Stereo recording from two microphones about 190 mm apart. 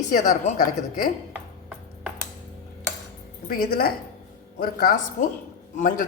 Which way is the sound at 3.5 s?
50° left (ahead or behind).